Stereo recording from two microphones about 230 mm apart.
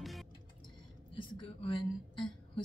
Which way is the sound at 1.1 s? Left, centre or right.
Left.